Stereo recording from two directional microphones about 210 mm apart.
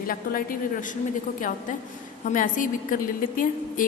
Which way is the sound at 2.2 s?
40° left (ahead or behind).